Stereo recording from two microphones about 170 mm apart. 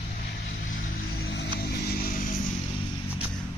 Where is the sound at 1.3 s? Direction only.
80° left.